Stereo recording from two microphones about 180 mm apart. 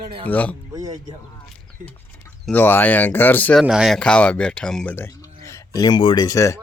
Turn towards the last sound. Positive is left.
turn(degrees=20)  # may be behind; listen again after turning